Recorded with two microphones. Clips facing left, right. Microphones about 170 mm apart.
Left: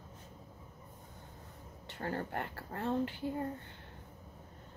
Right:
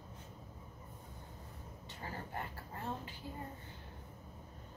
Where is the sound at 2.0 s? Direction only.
65° left (ahead or behind).